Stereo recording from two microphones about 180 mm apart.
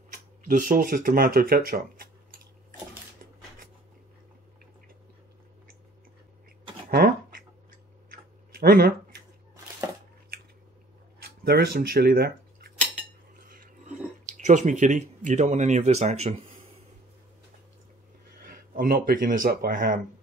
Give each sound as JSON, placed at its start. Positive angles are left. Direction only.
{"t": 0.1, "sound": "speech", "side_deg": -50}
{"t": 6.9, "sound": "a sound", "side_deg": -55}
{"t": 11.2, "sound": "speech", "side_deg": -60}
{"t": 13.4, "sound": "a sound", "side_deg": -50}
{"t": 14.2, "sound": "speech", "side_deg": -45}
{"t": 18.8, "sound": "speech", "side_deg": -50}